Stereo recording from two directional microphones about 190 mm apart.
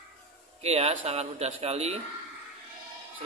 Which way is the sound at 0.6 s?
35° right (ahead or behind).